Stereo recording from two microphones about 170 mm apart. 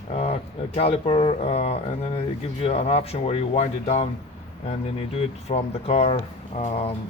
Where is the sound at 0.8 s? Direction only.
35° left (ahead or behind).